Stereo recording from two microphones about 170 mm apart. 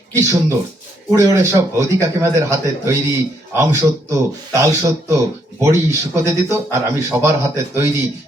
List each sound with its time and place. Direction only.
0.1 s speech: 20° right (ahead or behind)